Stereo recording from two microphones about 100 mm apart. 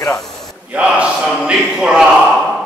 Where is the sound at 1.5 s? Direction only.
5° right (ahead or behind).